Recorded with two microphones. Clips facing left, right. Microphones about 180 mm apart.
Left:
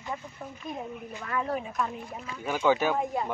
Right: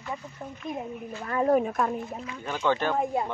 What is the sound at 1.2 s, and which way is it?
Speech, 40° right (ahead or behind).